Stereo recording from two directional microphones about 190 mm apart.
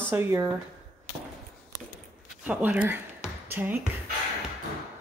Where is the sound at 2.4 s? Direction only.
5° right (ahead or behind).